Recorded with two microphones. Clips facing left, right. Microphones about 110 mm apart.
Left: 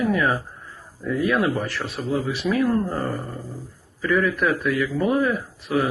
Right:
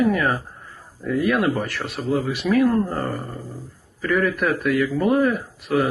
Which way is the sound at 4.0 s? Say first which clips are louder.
Even; 50° right (ahead or behind).